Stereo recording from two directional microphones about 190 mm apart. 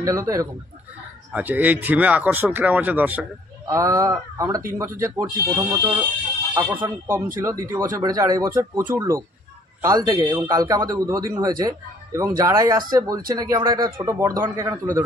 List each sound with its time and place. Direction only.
0.0 s a man's voice: 15° right (ahead or behind)